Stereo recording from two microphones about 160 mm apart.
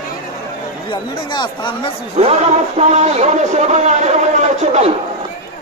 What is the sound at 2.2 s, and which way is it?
A man's voice, 45° right (ahead or behind).